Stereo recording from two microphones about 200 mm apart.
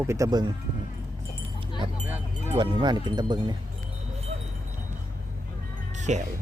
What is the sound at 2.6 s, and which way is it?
Speech, 20° right (ahead or behind).